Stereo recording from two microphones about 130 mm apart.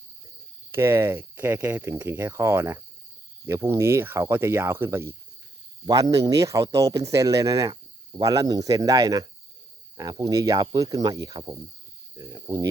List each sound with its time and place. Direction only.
0.7 s speech: 20° right (ahead or behind)